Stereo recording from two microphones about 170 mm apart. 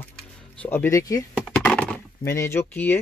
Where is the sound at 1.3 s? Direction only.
5° left (ahead or behind).